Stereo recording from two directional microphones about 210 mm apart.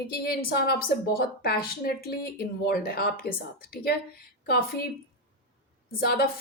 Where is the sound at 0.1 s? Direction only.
45° left (ahead or behind).